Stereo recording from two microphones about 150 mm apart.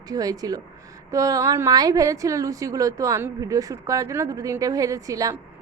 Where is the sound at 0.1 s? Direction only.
25° right (ahead or behind).